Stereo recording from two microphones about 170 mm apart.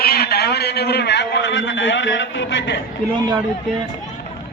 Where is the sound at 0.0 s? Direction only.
65° left (ahead or behind); by 2.8 s 90° left.